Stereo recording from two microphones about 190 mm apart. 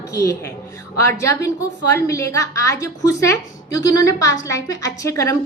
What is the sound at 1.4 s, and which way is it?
A woman's voice, 15° left (ahead or behind).